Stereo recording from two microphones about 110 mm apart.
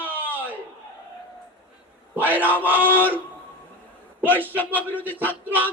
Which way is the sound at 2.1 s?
15° right (ahead or behind).